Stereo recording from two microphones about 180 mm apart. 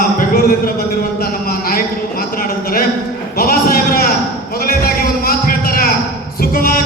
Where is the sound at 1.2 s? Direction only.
55° left (ahead or behind).